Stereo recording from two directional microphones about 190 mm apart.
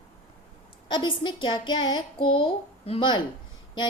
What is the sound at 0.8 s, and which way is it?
A woman's voice, 25° left (ahead or behind).